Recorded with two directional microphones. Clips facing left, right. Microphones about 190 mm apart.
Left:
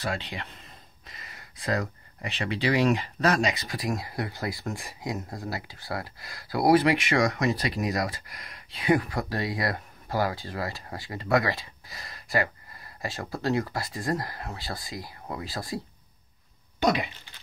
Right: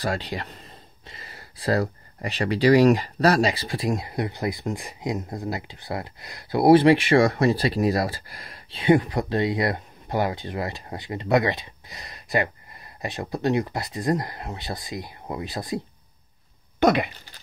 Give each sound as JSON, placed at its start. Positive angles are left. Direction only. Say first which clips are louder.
{"t": 0.0, "sound": "speech", "louder": "right 5 dB", "side_deg": -40}
{"t": 16.8, "sound": "speech", "louder": "right 5 dB", "side_deg": -60}